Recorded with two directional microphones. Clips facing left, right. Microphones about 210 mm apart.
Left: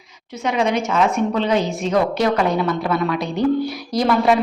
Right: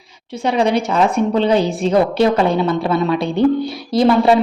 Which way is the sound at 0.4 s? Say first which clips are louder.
Right 3 dB; 35° right (ahead or behind).